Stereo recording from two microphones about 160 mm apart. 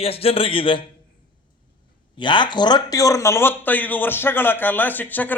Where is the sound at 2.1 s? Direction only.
30° left (ahead or behind); by 5.4 s 10° left (ahead or behind).